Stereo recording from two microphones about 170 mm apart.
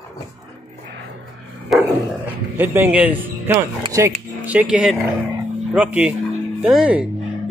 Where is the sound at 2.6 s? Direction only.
10° right (ahead or behind).